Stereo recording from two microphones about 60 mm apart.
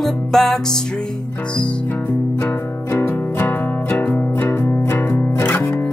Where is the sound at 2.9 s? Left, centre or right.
Left.